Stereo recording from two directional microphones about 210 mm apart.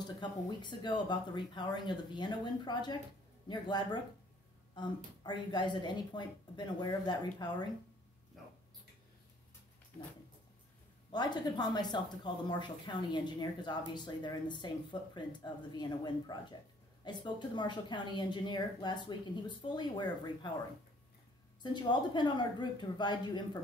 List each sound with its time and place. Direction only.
0.0 s speech: 20° left (ahead or behind)
8.4 s a sound: centre (ahead or behind)
11.1 s speech: 20° left (ahead or behind)
21.6 s speech: 20° left (ahead or behind)